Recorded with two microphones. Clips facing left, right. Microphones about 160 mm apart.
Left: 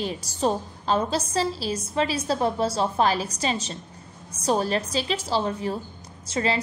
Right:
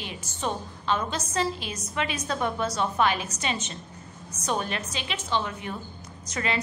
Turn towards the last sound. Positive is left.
turn(degrees=30)  # may be behind; listen again after turning